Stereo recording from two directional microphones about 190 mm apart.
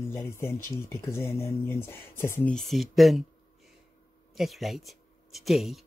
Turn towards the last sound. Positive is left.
turn(degrees=0)  # may be behind; listen again after turning